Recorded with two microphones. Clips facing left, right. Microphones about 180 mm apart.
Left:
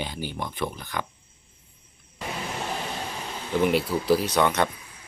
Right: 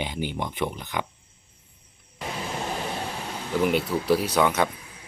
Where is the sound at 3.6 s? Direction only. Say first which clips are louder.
Left 1 dB; centre (ahead or behind).